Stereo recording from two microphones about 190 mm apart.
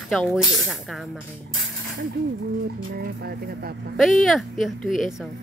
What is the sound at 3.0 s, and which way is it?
Speech, 55° right (ahead or behind).